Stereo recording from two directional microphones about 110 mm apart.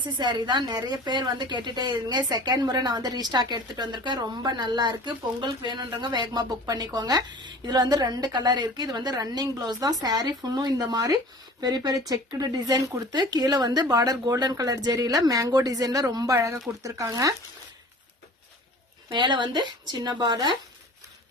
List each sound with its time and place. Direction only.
0.0 s a woman's voice: 45° right (ahead or behind)
19.0 s a woman's voice: 45° right (ahead or behind)